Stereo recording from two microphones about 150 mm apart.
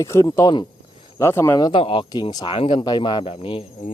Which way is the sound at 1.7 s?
35° left (ahead or behind).